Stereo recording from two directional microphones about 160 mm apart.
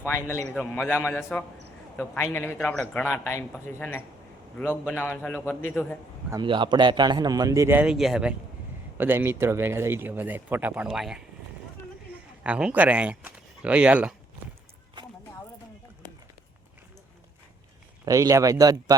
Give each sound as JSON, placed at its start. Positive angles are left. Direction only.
{"t": 0.0, "sound": "a man's voice", "side_deg": 15}
{"t": 6.3, "sound": "speech", "side_deg": -30}
{"t": 12.4, "sound": "speech", "side_deg": -5}
{"t": 18.0, "sound": "speech", "side_deg": -20}